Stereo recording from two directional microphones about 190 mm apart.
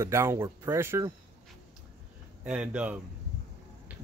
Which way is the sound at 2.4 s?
5° right (ahead or behind).